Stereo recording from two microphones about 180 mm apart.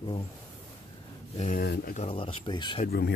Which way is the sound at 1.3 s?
40° left (ahead or behind).